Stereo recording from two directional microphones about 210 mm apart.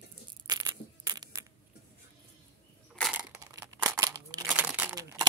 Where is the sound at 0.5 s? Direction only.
15° right (ahead or behind).